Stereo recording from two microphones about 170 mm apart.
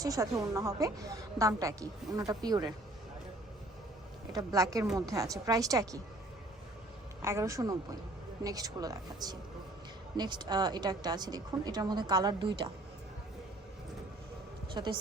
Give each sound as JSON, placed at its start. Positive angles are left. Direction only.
{"t": 0.0, "sound": "a woman's voice", "side_deg": -20}
{"t": 4.3, "sound": "a woman's voice", "side_deg": -20}
{"t": 7.2, "sound": "a woman's voice", "side_deg": -15}
{"t": 14.8, "sound": "a woman's voice", "side_deg": -25}